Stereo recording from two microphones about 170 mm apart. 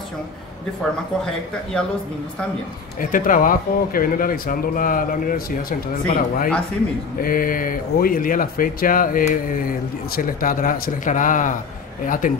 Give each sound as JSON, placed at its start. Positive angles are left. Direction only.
{"t": 1.2, "sound": "speech", "side_deg": 5}
{"t": 3.0, "sound": "speech", "side_deg": 55}